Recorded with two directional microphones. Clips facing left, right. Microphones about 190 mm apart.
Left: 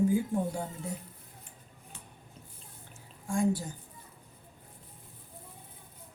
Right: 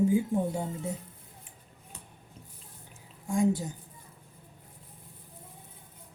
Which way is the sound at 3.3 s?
20° right (ahead or behind).